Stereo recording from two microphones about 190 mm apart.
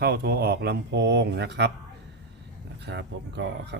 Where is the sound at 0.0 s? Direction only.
55° right (ahead or behind).